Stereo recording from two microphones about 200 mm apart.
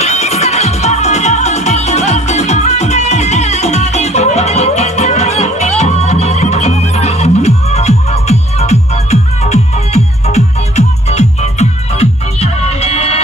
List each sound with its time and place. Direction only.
0.0 s music: 35° left (ahead or behind)